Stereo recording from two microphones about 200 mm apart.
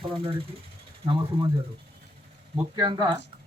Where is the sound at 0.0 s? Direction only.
25° right (ahead or behind).